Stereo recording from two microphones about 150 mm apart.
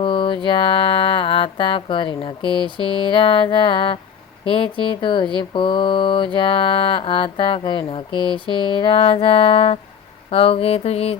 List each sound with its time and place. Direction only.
0.0 s mantra: 35° left (ahead or behind)